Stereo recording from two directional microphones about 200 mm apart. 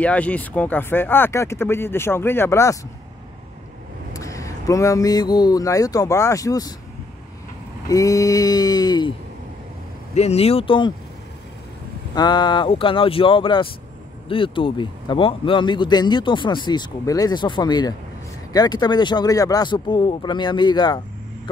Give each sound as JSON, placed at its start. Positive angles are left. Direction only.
{"t": 0.0, "sound": "speech", "side_deg": 5}
{"t": 4.1, "sound": "speech", "side_deg": 15}
{"t": 7.9, "sound": "a man's voice", "side_deg": 15}
{"t": 10.1, "sound": "a man's voice", "side_deg": 30}
{"t": 12.2, "sound": "a man's voice", "side_deg": 20}